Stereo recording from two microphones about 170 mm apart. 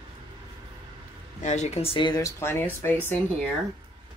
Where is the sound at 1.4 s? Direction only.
45° left (ahead or behind); by 3.5 s 10° left (ahead or behind).